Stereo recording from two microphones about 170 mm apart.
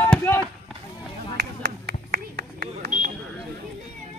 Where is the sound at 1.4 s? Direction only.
75° right (ahead or behind).